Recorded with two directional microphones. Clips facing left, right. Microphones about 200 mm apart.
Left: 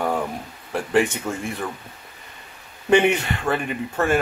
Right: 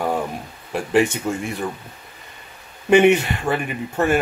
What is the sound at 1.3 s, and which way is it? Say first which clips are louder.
Speech: right 4 dB; 10° right (ahead or behind).